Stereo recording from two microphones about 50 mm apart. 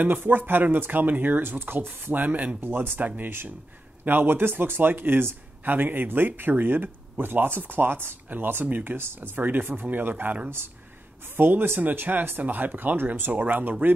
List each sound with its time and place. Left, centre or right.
0.0 s speech: right
2.6 s a man's voice: right
3.0 s speech: right
4.0 s a man's voice: right
8.9 s a man's voice: right